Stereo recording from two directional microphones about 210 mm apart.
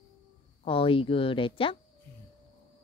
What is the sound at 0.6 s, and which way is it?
Speech, 25° left (ahead or behind).